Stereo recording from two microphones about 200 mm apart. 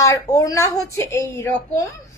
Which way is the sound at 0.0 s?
15° left (ahead or behind).